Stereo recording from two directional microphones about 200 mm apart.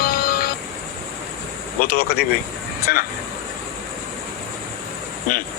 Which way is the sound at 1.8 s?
50° left (ahead or behind).